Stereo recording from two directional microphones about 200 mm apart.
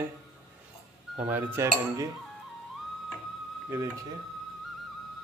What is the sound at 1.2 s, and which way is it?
Speech, 10° right (ahead or behind).